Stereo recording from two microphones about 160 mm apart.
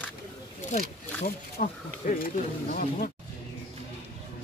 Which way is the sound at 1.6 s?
55° left (ahead or behind).